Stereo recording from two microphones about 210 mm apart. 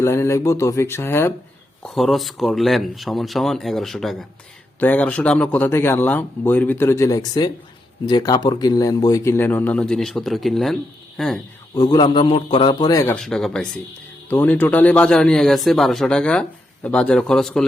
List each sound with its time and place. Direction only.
0.0 s speech: 15° left (ahead or behind)
1.8 s a man's voice: centre (ahead or behind)
11.7 s a man's voice: 20° left (ahead or behind)
13.1 s a man's voice: centre (ahead or behind)